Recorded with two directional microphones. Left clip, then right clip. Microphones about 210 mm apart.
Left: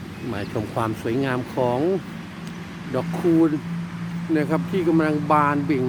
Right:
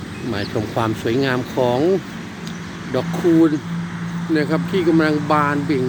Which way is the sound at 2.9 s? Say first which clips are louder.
Right 4 dB; 5° left (ahead or behind).